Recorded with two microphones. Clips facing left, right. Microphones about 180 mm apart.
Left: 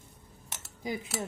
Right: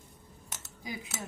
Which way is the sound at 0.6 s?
30° left (ahead or behind).